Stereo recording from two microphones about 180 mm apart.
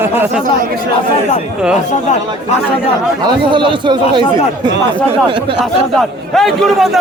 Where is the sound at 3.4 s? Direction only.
25° right (ahead or behind).